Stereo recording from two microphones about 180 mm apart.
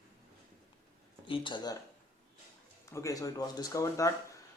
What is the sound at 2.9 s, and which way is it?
Speech, 20° left (ahead or behind).